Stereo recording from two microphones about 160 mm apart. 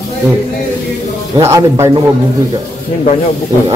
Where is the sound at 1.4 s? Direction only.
20° right (ahead or behind).